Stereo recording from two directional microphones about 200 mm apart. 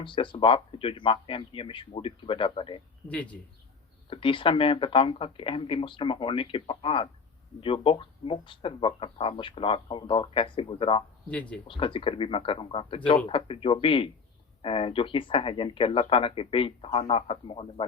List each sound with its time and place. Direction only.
0.0 s speech: 25° left (ahead or behind)
4.1 s speech: 25° left (ahead or behind)
11.3 s speech: 5° left (ahead or behind)
11.7 s speech: 25° left (ahead or behind)